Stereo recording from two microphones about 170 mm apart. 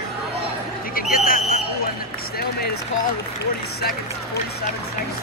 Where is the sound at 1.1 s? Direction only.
60° left (ahead or behind).